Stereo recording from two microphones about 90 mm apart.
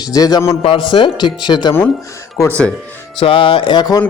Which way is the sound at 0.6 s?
80° left.